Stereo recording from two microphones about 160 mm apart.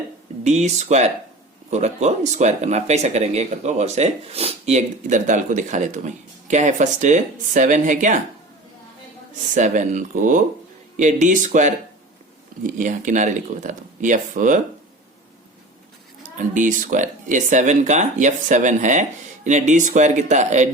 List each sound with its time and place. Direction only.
0.4 s speech: 45° right (ahead or behind)
9.6 s speech: 50° right (ahead or behind)
16.6 s speech: 55° right (ahead or behind)